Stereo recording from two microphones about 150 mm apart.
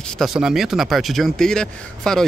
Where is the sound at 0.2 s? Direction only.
5° right (ahead or behind).